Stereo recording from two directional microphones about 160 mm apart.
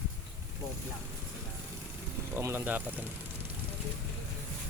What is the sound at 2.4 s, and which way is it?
Speech, 15° right (ahead or behind).